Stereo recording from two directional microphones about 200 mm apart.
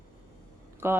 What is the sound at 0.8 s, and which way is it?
Speech, 10° right (ahead or behind).